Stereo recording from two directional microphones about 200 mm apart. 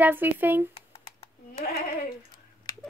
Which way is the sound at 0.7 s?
30° left (ahead or behind).